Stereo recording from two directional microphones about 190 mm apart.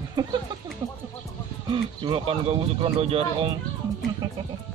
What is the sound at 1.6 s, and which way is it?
Speech, 25° right (ahead or behind).